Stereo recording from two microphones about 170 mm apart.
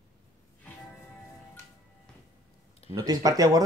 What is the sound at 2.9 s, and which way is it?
Speech, 20° right (ahead or behind).